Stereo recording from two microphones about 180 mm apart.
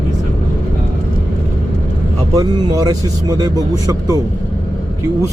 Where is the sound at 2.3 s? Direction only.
20° right (ahead or behind).